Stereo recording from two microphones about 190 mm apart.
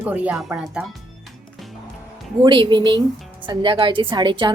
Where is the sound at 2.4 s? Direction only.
25° right (ahead or behind).